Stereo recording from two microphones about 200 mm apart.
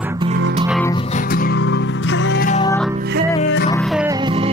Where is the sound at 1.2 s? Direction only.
45° left (ahead or behind); by 2.4 s 65° left (ahead or behind).